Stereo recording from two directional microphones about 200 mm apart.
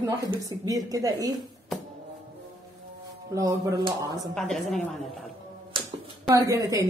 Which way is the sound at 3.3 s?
15° right (ahead or behind).